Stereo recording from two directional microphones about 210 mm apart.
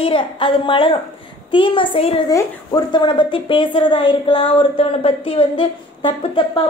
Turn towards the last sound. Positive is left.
turn(degrees=25)  # may be behind; listen again after turning